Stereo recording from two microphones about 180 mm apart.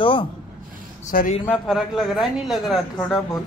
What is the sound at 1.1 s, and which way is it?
Speech, 50° left (ahead or behind).